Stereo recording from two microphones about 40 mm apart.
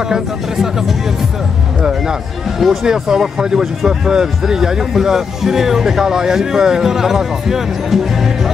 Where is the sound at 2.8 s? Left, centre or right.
Centre.